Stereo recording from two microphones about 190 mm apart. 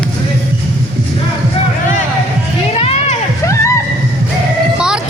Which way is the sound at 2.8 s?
35° left (ahead or behind).